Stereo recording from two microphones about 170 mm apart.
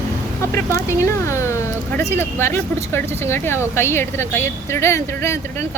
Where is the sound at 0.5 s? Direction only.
15° left (ahead or behind).